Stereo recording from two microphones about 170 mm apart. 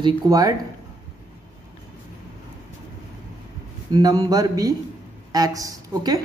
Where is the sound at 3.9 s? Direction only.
20° right (ahead or behind).